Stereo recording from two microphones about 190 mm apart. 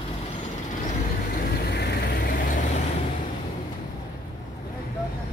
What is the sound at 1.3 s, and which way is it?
Vehicle, 55° left (ahead or behind).